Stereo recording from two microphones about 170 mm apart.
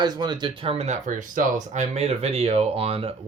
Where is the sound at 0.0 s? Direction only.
25° right (ahead or behind).